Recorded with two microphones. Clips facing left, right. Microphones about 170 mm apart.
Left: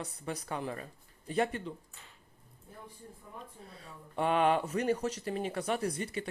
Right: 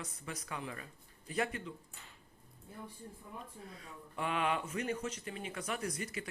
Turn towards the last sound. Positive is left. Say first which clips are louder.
# left 5 dB
turn(degrees=30)  # may be behind; listen again after turning